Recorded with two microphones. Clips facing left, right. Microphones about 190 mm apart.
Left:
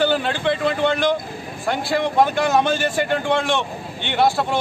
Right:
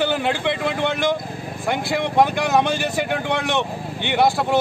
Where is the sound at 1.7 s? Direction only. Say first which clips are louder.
Left 1 dB; 15° right (ahead or behind).